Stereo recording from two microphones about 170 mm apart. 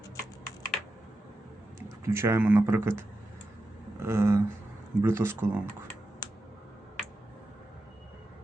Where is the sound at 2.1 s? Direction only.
15° right (ahead or behind).